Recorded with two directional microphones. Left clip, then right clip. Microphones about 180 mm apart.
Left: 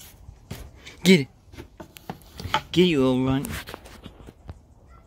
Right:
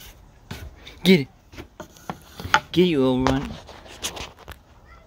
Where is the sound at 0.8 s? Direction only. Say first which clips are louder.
Right 1 dB; centre (ahead or behind).